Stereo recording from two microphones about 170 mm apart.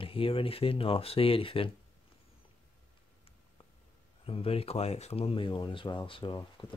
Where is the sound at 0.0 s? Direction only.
30° left (ahead or behind).